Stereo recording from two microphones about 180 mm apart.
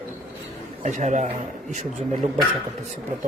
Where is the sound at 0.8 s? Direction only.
40° right (ahead or behind).